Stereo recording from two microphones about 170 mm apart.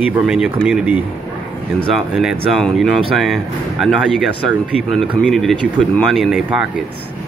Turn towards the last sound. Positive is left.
turn(degrees=0)  # may be behind; listen again after turning